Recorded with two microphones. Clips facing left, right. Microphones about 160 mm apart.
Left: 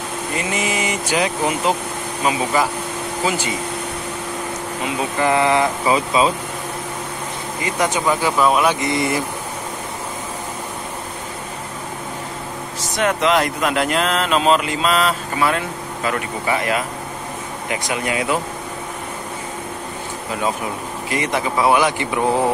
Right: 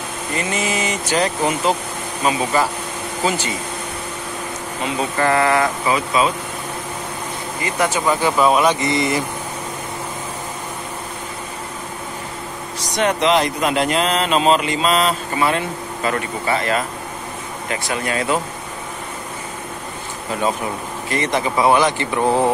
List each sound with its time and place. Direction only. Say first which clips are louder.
0.4 s speech: right 1 dB; 15° left (ahead or behind)
5.2 s speech: even; 15° left (ahead or behind)
7.8 s speech: right 1 dB; 10° left (ahead or behind)
8.4 s speech: right 2 dB; centre (ahead or behind)
12.9 s speech: right 1 dB; centre (ahead or behind)
16.1 s speech: right 1 dB; 10° left (ahead or behind)
21.1 s speech: right 1 dB; 10° left (ahead or behind)